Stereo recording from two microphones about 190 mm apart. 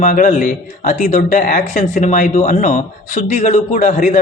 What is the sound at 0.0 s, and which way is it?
Speech, 40° left (ahead or behind).